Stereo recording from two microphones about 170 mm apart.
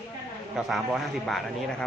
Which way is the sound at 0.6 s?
Centre (ahead or behind).